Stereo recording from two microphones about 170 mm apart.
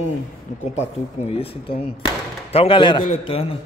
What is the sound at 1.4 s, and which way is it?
A man's voice, 35° left (ahead or behind).